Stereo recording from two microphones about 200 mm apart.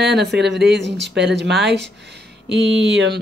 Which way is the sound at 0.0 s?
55° right (ahead or behind).